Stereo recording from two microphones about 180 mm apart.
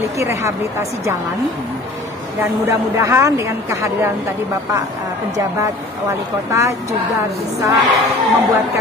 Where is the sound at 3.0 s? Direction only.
15° right (ahead or behind).